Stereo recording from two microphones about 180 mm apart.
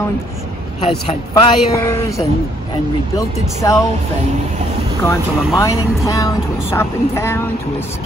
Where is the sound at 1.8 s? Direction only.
15° left (ahead or behind).